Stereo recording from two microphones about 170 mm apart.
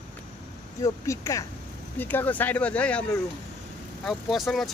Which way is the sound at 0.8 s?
20° left (ahead or behind).